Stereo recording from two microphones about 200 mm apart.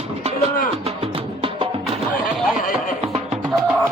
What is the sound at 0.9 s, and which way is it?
Music, 25° right (ahead or behind).